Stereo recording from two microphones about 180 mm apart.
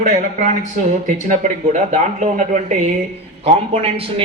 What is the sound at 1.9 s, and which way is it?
A man's voice, 40° right (ahead or behind).